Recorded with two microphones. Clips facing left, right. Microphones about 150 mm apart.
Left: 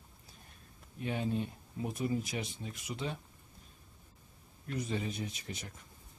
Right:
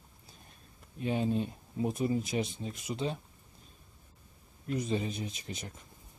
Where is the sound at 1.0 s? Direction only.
25° right (ahead or behind).